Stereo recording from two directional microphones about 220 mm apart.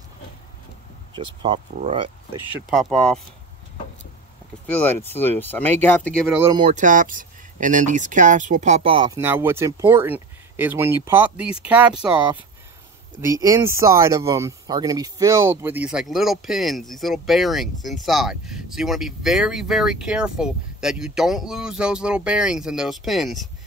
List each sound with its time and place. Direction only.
1.1 s speech: 20° right (ahead or behind)
2.7 s speech: centre (ahead or behind)
4.7 s speech: 10° left (ahead or behind)
6.5 s speech: 30° right (ahead or behind)
9.2 s speech: 10° right (ahead or behind)